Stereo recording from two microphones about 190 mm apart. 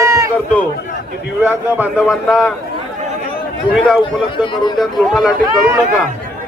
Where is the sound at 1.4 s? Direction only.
5° right (ahead or behind).